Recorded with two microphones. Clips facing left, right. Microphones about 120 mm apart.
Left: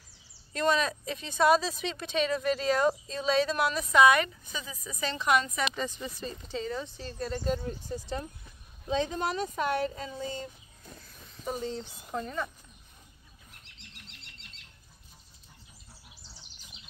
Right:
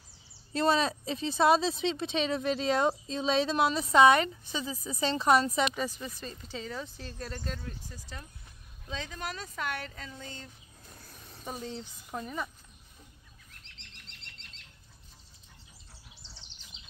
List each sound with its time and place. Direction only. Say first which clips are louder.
0.5 s speech: right 1 dB; 30° right (ahead or behind)
5.8 s speech: even; 5° right (ahead or behind)
7.5 s speech: left 9 dB; 25° left (ahead or behind)
11.1 s a sound: even; 35° right (ahead or behind)
11.4 s speech: left 5 dB; 5° right (ahead or behind)
13.7 s bird: left 4 dB; 5° left (ahead or behind)